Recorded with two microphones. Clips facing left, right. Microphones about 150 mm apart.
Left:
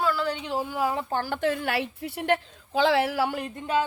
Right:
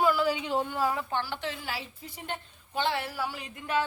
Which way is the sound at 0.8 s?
25° left (ahead or behind).